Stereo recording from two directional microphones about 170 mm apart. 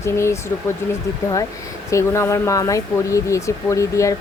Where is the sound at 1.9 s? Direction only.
15° left (ahead or behind).